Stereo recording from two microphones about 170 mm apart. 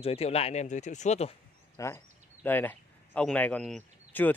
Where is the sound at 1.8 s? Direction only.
20° left (ahead or behind).